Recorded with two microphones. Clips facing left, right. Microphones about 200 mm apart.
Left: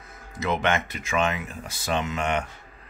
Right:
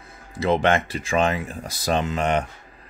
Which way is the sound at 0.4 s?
30° right (ahead or behind).